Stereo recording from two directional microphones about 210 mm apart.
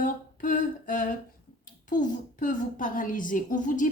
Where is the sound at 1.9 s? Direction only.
35° left (ahead or behind).